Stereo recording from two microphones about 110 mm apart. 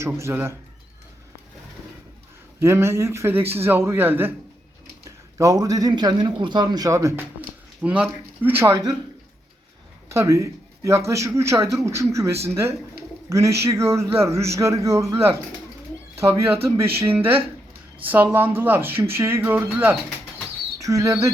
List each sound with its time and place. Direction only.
0.2 s speech: 25° right (ahead or behind)
2.6 s speech: 25° right (ahead or behind)
5.0 s a man's voice: 30° right (ahead or behind)
7.8 s speech: 10° right (ahead or behind)
10.1 s speech: 30° right (ahead or behind)
16.6 s speech: 25° right (ahead or behind)
20.7 s speech: 30° right (ahead or behind)